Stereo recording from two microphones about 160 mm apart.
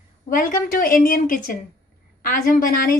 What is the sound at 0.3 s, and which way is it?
Speech, 60° left (ahead or behind).